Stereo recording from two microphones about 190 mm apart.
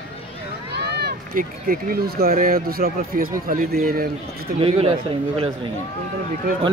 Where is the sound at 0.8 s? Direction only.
60° right (ahead or behind).